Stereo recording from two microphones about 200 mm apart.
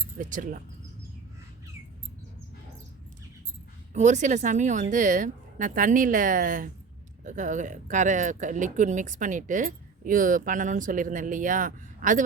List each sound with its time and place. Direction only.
0.2 s speech: 40° right (ahead or behind)
3.9 s speech: 35° right (ahead or behind)